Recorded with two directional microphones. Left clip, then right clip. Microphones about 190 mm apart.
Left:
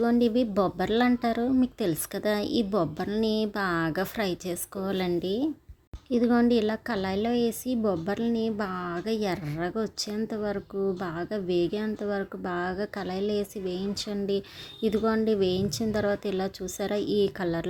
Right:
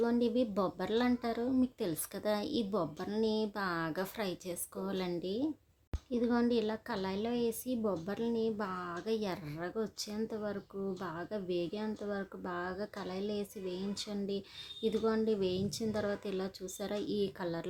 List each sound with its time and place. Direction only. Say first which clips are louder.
0.0 s a woman's voice: left 7 dB; 25° left (ahead or behind)